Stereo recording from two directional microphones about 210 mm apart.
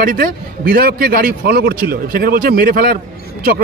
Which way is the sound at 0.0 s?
40° right (ahead or behind).